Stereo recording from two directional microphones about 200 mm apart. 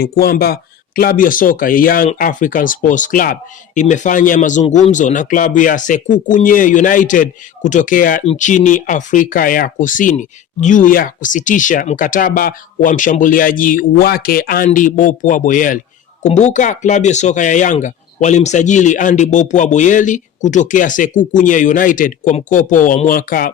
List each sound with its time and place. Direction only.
0.0 s speech: 50° left (ahead or behind)